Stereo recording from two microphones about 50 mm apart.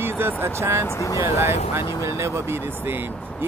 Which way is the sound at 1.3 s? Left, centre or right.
Right.